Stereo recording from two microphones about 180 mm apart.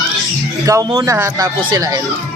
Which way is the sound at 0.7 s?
20° right (ahead or behind).